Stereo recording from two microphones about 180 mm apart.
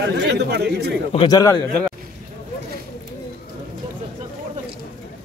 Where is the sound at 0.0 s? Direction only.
65° right (ahead or behind).